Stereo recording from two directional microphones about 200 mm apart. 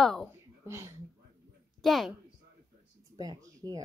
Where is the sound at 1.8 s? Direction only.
Centre (ahead or behind).